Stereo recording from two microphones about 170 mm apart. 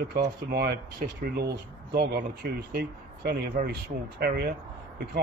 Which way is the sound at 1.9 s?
70° right (ahead or behind).